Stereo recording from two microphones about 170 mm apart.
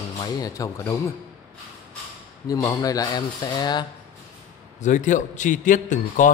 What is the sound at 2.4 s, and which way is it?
Speech, 20° left (ahead or behind).